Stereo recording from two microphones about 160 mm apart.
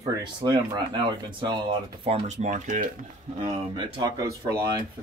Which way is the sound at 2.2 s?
45° right (ahead or behind).